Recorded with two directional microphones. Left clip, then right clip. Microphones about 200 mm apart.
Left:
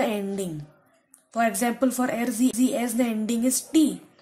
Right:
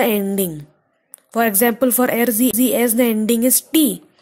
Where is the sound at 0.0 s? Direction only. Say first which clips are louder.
Right 8 dB; 40° right (ahead or behind).